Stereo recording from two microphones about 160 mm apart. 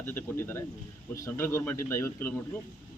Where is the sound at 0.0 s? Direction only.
15° left (ahead or behind).